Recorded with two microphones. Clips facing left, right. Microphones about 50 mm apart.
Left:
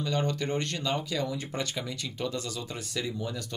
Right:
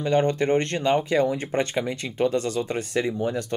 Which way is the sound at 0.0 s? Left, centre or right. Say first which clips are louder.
Right 9 dB; right.